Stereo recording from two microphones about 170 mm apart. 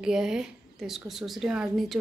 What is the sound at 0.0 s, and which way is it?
A woman's voice, 5° right (ahead or behind).